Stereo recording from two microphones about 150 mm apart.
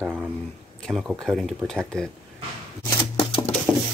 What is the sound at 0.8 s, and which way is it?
Speech, centre (ahead or behind).